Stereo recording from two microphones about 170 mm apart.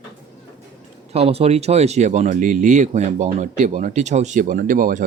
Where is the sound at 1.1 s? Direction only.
35° right (ahead or behind).